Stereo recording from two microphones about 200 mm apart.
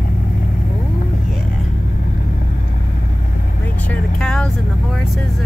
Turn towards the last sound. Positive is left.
turn(degrees=5)  # may be behind; listen again after turning